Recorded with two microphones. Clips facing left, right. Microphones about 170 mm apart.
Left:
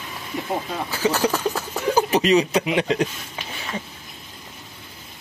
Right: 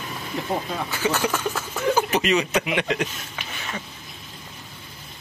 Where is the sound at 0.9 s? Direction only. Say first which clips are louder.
Left 3 dB; 35° left (ahead or behind).